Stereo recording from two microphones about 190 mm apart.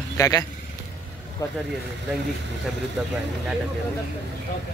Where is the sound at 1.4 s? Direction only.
20° left (ahead or behind).